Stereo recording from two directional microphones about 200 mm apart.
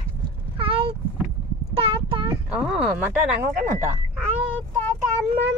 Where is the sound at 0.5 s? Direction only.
25° right (ahead or behind).